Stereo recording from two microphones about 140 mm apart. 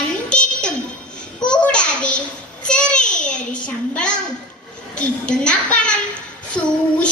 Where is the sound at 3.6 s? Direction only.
10° left (ahead or behind).